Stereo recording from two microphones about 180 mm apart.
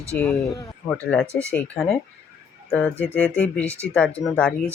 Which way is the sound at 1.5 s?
5° left (ahead or behind).